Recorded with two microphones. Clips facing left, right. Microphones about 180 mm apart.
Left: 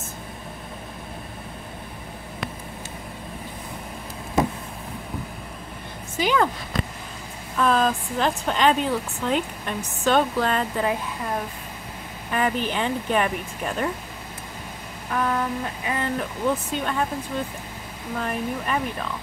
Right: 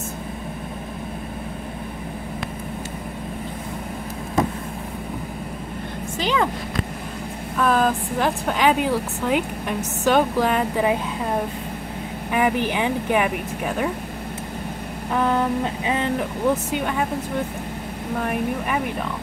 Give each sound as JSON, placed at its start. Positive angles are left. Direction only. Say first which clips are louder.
{"t": 6.1, "sound": "speech", "louder": "left 1 dB", "side_deg": 0}
{"t": 7.5, "sound": "speech", "louder": "right 1 dB", "side_deg": -5}
{"t": 12.3, "sound": "speech", "louder": "right 3 dB", "side_deg": -15}
{"t": 15.1, "sound": "speech", "louder": "right 4 dB", "side_deg": -25}
{"t": 18.2, "sound": "speech", "louder": "right 3 dB", "side_deg": -10}